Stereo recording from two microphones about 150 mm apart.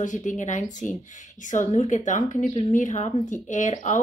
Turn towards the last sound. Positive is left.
turn(degrees=55)  # may be behind; listen again after turning